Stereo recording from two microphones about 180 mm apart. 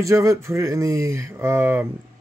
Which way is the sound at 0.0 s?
15° right (ahead or behind).